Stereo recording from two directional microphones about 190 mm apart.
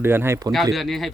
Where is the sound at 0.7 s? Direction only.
Centre (ahead or behind).